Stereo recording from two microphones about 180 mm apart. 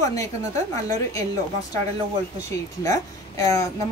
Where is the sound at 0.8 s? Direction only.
20° left (ahead or behind).